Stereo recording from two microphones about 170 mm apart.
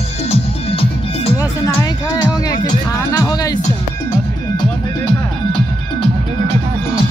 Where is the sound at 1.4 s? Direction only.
15° left (ahead or behind).